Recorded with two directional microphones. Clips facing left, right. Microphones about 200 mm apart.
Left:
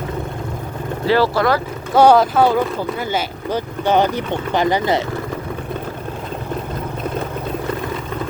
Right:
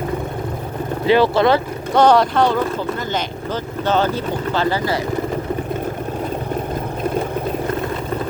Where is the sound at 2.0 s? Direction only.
5° left (ahead or behind).